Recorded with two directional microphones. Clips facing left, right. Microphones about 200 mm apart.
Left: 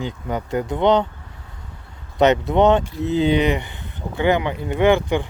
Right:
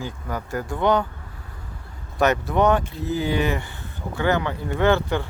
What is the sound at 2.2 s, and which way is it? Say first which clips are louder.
Speech: left 4 dB; 20° left (ahead or behind).